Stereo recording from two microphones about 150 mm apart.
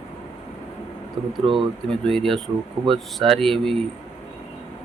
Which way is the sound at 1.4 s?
40° right (ahead or behind).